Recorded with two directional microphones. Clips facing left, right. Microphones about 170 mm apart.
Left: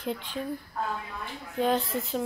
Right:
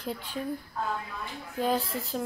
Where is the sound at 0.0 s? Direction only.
5° right (ahead or behind).